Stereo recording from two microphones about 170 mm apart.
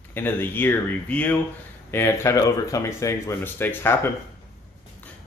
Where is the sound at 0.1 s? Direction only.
10° left (ahead or behind).